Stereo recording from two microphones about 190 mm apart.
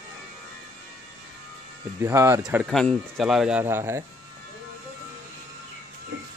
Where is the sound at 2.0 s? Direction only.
15° right (ahead or behind).